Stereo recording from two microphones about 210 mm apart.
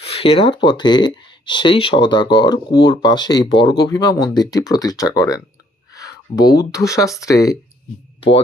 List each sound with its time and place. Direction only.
0.0 s speech: 30° left (ahead or behind)